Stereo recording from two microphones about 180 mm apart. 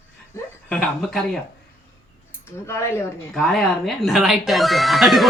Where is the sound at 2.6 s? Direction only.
15° left (ahead or behind).